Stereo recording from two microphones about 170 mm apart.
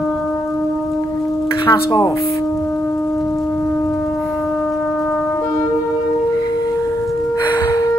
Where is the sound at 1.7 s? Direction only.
20° left (ahead or behind).